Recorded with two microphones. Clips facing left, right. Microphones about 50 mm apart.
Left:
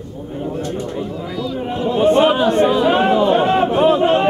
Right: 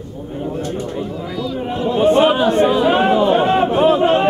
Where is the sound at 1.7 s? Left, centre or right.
Centre.